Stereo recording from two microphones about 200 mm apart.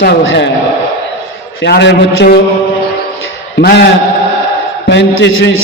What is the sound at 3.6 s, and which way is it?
Speech, 55° left (ahead or behind).